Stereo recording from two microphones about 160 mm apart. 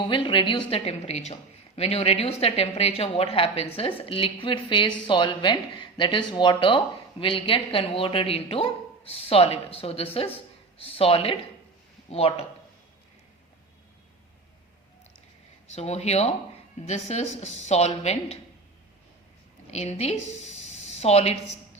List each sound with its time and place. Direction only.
0.1 s speech: 30° left (ahead or behind)
15.7 s a woman's voice: 40° left (ahead or behind)
19.7 s speech: 40° left (ahead or behind)